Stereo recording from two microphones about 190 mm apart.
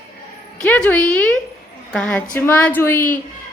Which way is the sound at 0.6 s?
5° left (ahead or behind).